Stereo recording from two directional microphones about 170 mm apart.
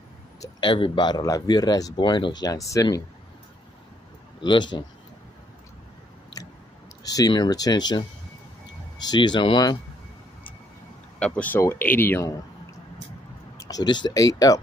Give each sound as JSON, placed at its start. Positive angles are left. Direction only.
{"t": 0.4, "sound": "speech", "side_deg": 30}
{"t": 4.4, "sound": "speech", "side_deg": 25}
{"t": 7.1, "sound": "speech", "side_deg": 20}
{"t": 11.1, "sound": "speech", "side_deg": 5}
{"t": 13.6, "sound": "speech", "side_deg": 20}